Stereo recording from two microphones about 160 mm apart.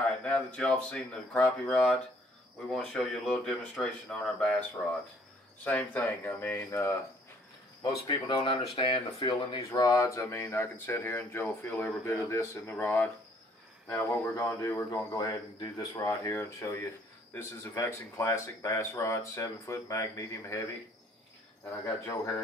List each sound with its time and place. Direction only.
0.2 s speech: 5° left (ahead or behind)
8.1 s speech: 30° left (ahead or behind)
9.6 s speech: 20° left (ahead or behind)
21.8 s speech: 20° left (ahead or behind)